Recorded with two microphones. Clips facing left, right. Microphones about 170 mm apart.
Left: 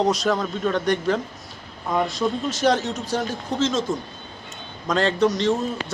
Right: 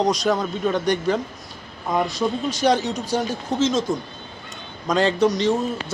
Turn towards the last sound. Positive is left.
turn(degrees=0)  # may be behind; listen again after turning